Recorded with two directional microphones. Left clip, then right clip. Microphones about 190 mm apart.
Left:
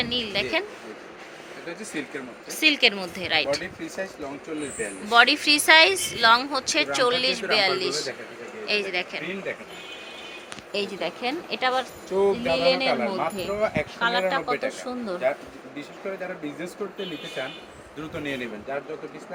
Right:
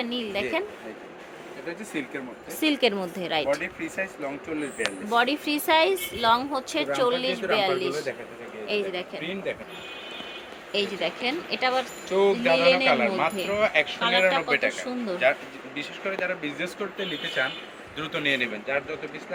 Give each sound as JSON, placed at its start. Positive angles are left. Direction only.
{"t": 0.0, "sound": "a woman's voice", "side_deg": -10}
{"t": 2.5, "sound": "a woman's voice", "side_deg": -25}
{"t": 5.0, "sound": "a woman's voice", "side_deg": -10}
{"t": 10.7, "sound": "speech", "side_deg": 0}
{"t": 12.0, "sound": "speech", "side_deg": 5}
{"t": 12.4, "sound": "speech", "side_deg": -10}